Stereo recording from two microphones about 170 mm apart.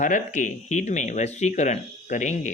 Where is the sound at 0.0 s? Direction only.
50° left (ahead or behind).